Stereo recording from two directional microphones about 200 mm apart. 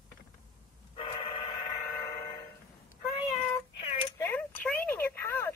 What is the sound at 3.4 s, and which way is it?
Cat, 30° left (ahead or behind).